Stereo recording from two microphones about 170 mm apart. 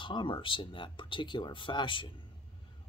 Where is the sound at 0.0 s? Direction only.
30° left (ahead or behind).